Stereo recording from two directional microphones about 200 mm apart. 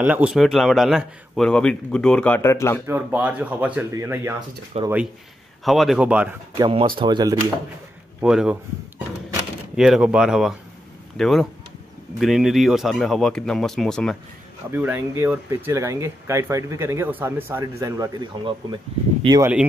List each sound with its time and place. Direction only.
0.0 s speech: 5° right (ahead or behind); by 2.8 s 15° left (ahead or behind)
2.9 s speech: 10° right (ahead or behind)
4.7 s speech: 30° right (ahead or behind)
5.6 s speech: centre (ahead or behind)
6.6 s speech: 25° right (ahead or behind)
8.2 s speech: 5° right (ahead or behind)
14.7 s speech: 10° right (ahead or behind)